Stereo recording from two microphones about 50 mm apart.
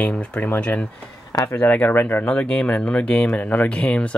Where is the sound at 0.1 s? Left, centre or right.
Left.